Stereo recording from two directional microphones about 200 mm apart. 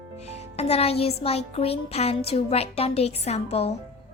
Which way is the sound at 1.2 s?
30° left (ahead or behind).